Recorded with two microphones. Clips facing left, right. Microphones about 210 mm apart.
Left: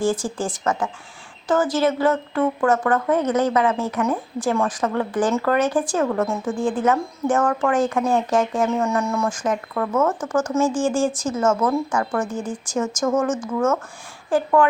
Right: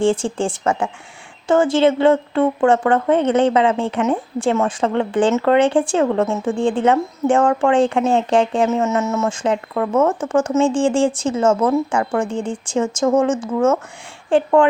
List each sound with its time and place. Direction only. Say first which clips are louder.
0.0 s speech: right 5 dB; 30° right (ahead or behind)